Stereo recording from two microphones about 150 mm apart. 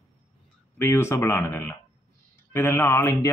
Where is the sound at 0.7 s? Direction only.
15° left (ahead or behind).